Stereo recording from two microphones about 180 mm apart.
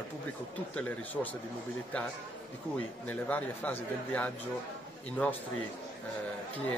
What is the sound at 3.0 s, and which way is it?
Speech, 10° left (ahead or behind).